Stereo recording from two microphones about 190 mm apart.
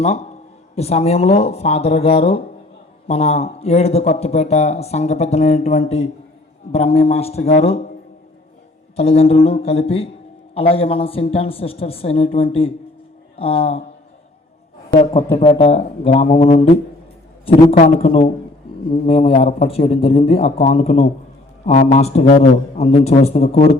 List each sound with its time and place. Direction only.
0.0 s a man's voice: 35° left (ahead or behind)
9.0 s a man's voice: 30° left (ahead or behind)
15.4 s a man's voice: 30° left (ahead or behind)